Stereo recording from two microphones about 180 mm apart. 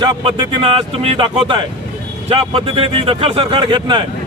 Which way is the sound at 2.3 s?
30° right (ahead or behind).